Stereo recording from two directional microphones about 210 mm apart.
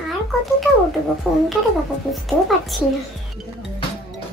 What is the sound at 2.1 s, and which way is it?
Speech, centre (ahead or behind).